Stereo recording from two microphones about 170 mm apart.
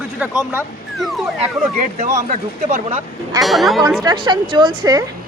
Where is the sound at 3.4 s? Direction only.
Centre (ahead or behind).